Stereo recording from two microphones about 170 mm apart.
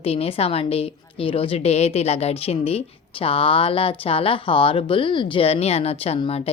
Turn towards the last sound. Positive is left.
turn(degrees=35)  # may be behind; listen again after turning